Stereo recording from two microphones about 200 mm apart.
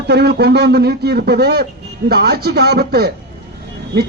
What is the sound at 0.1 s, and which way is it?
A man's voice, 55° right (ahead or behind).